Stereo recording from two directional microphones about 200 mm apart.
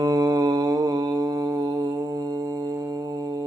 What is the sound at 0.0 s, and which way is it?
Mantra, 20° right (ahead or behind).